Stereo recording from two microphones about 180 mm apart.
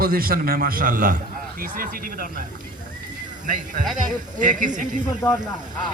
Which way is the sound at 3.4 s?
45° right (ahead or behind).